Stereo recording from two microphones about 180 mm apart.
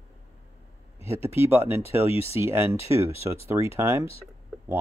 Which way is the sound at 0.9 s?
15° right (ahead or behind).